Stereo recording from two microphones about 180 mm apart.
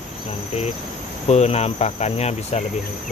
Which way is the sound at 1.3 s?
35° left (ahead or behind).